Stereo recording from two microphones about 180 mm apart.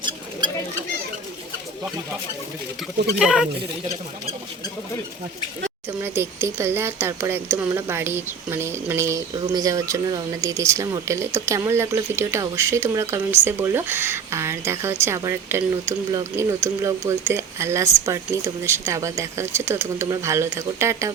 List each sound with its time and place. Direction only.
3.2 s speech: 5° right (ahead or behind)
6.0 s speech: 15° right (ahead or behind)